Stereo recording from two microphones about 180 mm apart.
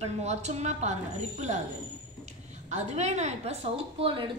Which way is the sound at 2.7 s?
40° right (ahead or behind).